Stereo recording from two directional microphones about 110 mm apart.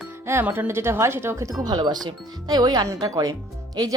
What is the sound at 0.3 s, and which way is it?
A woman's voice, 20° right (ahead or behind).